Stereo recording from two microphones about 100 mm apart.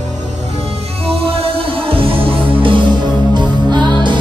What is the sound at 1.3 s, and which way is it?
Music, 75° right (ahead or behind).